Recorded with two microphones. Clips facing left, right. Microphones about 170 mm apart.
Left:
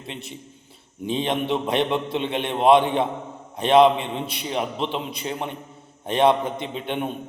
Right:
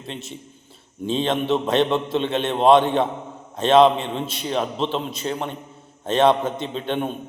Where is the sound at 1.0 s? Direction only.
15° left (ahead or behind).